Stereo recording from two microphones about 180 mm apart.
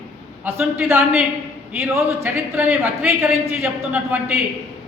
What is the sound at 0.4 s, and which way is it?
A man's voice, 10° right (ahead or behind).